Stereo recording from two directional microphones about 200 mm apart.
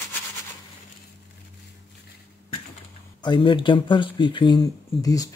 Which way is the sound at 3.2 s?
25° left (ahead or behind).